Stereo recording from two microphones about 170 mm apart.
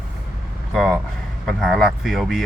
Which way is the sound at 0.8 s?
Centre (ahead or behind).